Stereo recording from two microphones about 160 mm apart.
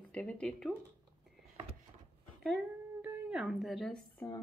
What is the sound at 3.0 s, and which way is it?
Speech, 5° right (ahead or behind).